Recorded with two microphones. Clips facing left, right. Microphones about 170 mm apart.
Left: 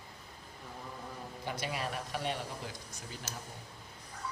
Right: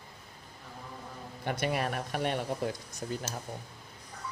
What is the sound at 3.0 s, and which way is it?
Speech, 45° right (ahead or behind).